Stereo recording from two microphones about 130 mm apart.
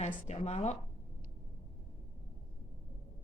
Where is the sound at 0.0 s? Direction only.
60° left (ahead or behind).